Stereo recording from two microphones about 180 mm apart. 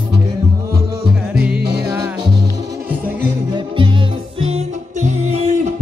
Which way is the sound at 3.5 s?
25° right (ahead or behind).